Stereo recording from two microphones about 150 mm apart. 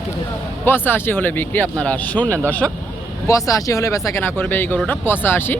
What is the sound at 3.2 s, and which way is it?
Speech, 20° left (ahead or behind).